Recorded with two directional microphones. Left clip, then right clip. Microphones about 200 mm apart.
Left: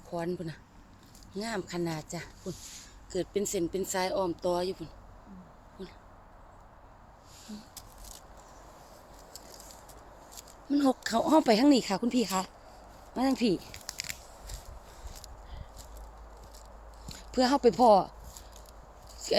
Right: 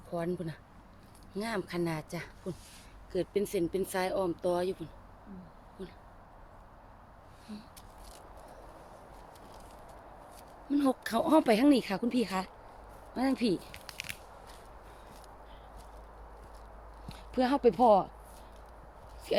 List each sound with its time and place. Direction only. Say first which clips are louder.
0.1 s speech: left 1 dB; 15° left (ahead or behind)
10.7 s speech: left 2 dB; 25° left (ahead or behind)
13.7 s biting: left 2 dB; 55° left (ahead or behind)
17.1 s speech: left 3 dB; 30° left (ahead or behind)
19.2 s a sound: left 2 dB; 25° left (ahead or behind)